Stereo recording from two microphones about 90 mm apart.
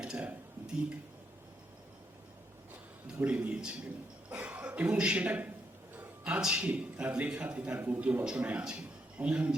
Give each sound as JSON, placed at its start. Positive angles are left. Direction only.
{"t": 0.0, "sound": "speech", "side_deg": -10}
{"t": 3.2, "sound": "a man's voice", "side_deg": -15}
{"t": 6.0, "sound": "a sound", "side_deg": -15}
{"t": 6.4, "sound": "a man's voice", "side_deg": -10}